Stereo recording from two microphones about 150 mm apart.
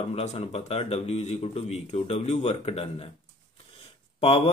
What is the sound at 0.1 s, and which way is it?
A man's voice, 45° left (ahead or behind).